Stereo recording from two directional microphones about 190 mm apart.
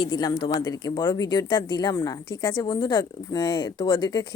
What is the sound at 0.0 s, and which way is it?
Speech, 20° left (ahead or behind).